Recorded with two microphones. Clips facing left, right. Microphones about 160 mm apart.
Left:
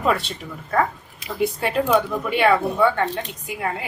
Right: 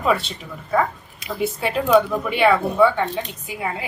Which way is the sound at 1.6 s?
Centre (ahead or behind).